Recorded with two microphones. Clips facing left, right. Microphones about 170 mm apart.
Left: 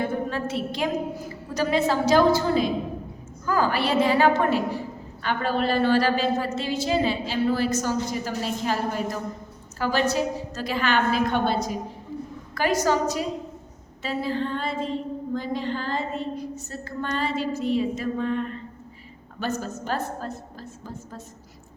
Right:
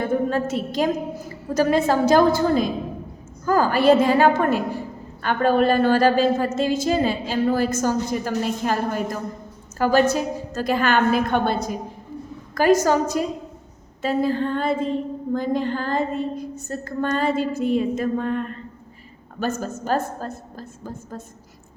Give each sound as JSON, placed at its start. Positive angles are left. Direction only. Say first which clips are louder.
{"t": 0.3, "sound": "a woman's voice", "louder": "right 4 dB", "side_deg": -45}
{"t": 19.4, "sound": "a woman's voice", "louder": "right 3 dB", "side_deg": -45}